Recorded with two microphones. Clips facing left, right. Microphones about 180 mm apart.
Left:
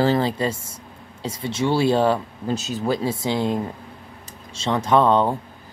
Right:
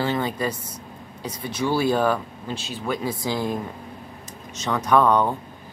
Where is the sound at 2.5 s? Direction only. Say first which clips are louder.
Left 5 dB; 40° left (ahead or behind); by 5.3 s 25° left (ahead or behind).